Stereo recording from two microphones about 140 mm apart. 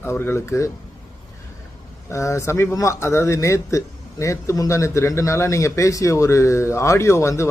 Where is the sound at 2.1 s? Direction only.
20° left (ahead or behind).